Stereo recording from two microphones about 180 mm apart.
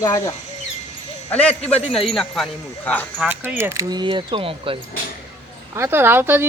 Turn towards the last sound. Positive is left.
turn(degrees=-10)  # may be behind; listen again after turning